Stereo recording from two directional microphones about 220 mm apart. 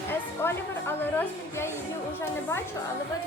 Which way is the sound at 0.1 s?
10° left (ahead or behind).